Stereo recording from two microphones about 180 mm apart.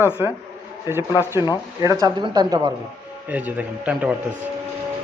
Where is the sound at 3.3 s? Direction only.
10° right (ahead or behind).